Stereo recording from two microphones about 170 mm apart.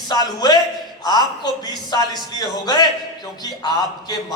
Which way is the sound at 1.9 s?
25° left (ahead or behind).